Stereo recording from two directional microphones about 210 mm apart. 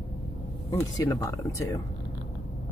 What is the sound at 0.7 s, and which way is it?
Speech, 15° left (ahead or behind).